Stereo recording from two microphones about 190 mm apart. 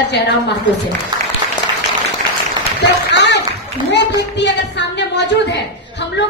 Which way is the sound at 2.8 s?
65° left (ahead or behind).